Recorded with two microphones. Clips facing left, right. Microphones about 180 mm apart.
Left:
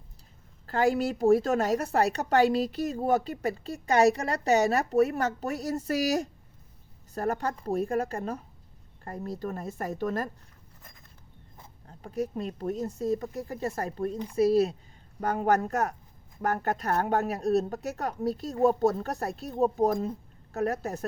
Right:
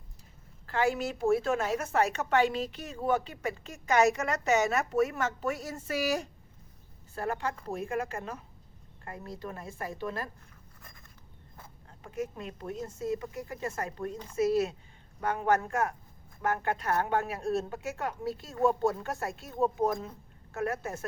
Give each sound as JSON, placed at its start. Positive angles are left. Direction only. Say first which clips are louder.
{"t": 0.7, "sound": "a woman's voice", "louder": "left 4 dB", "side_deg": 35}
{"t": 11.9, "sound": "a woman's voice", "louder": "left 4 dB", "side_deg": 35}